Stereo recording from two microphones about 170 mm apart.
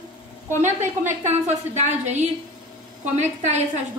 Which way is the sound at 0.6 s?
45° right (ahead or behind).